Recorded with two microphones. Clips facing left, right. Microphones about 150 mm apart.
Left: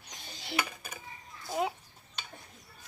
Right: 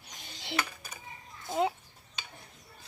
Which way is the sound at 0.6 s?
10° left (ahead or behind).